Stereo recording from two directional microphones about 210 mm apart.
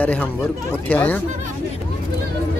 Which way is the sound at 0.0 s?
5° left (ahead or behind).